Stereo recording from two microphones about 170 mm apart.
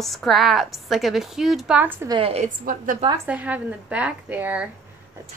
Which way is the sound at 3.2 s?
10° right (ahead or behind).